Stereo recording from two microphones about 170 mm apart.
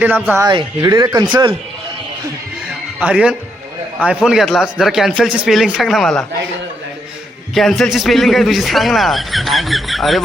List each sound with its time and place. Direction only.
0.0 s speech: 10° right (ahead or behind)
0.4 s speech: 25° right (ahead or behind)
3.0 s speech: 5° right (ahead or behind)
7.5 s speech: centre (ahead or behind)